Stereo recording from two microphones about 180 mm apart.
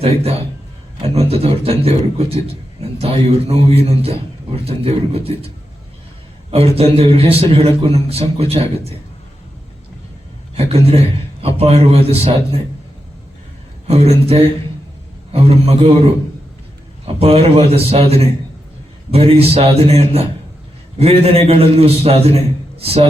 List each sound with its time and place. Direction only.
0.0 s a man's voice: 35° right (ahead or behind)
6.5 s a man's voice: 35° right (ahead or behind)
10.5 s a man's voice: 35° right (ahead or behind)
13.8 s a man's voice: 35° right (ahead or behind)
17.2 s a man's voice: 35° right (ahead or behind)